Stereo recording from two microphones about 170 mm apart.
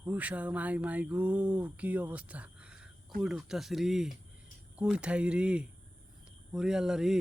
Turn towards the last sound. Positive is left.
turn(degrees=-5)  # may be behind; listen again after turning